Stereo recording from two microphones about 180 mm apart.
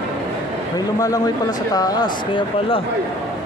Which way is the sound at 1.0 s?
20° left (ahead or behind).